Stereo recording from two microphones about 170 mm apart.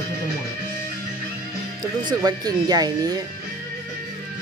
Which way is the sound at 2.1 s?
25° right (ahead or behind).